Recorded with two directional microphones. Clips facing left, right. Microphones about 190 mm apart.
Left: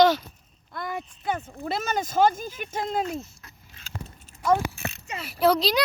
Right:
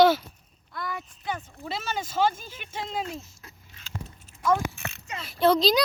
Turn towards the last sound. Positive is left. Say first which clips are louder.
# right 1 dB
turn(degrees=5)  # may be behind; listen again after turning